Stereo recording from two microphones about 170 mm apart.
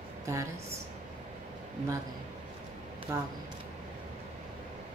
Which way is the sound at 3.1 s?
15° right (ahead or behind).